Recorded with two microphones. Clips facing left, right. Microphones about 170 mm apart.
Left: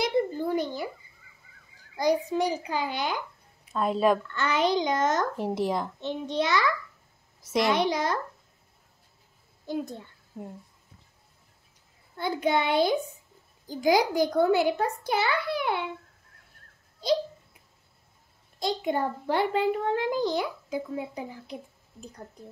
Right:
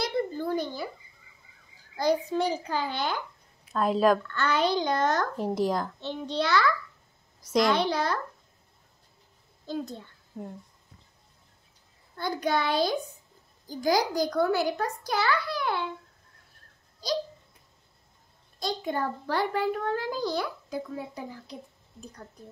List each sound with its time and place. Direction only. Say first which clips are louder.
0.0 s a sound: left 3 dB; 15° left (ahead or behind)
2.0 s a child's voice: left 1 dB; 15° left (ahead or behind)
3.7 s speech: right 1 dB; centre (ahead or behind)
4.3 s a child's voice: left 1 dB; 15° left (ahead or behind)
5.2 s speech: even; 5° left (ahead or behind)
5.9 s a child's voice: left 2 dB; 15° left (ahead or behind)
7.4 s speech: right 1 dB; 5° left (ahead or behind)
7.7 s a child's voice: left 1 dB; 15° left (ahead or behind)
9.7 s a child's voice: left 2 dB; 15° left (ahead or behind)
10.3 s speech: right 1 dB; 5° left (ahead or behind)
12.2 s a child's voice: left 2 dB; 20° left (ahead or behind)
18.6 s a child's voice: left 3 dB; 20° left (ahead or behind)